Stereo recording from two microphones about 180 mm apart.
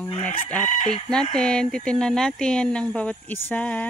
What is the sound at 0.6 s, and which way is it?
Chicken, 40° left (ahead or behind).